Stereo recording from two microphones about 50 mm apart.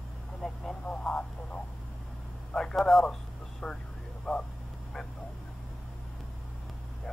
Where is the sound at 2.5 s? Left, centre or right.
Centre.